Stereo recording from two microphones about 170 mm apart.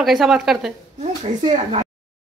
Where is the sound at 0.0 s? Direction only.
Centre (ahead or behind).